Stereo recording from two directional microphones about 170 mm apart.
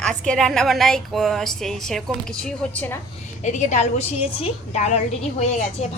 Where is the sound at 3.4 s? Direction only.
45° left (ahead or behind).